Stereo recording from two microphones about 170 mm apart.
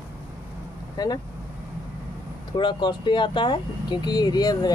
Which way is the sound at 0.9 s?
25° left (ahead or behind).